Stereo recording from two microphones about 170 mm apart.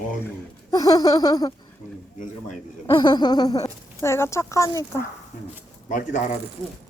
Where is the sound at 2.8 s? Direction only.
25° left (ahead or behind).